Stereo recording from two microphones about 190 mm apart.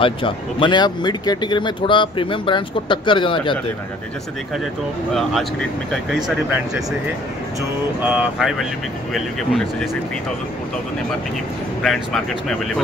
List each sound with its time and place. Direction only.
0.0 s speech: 25° left (ahead or behind)
5.1 s speech: centre (ahead or behind)
8.0 s speech: 5° right (ahead or behind)
11.8 s speech: centre (ahead or behind)